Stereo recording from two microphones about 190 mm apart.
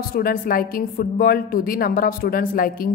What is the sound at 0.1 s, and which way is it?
Speech, 50° left (ahead or behind).